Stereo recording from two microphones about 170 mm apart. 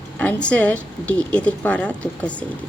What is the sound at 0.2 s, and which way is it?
Speech, 5° left (ahead or behind).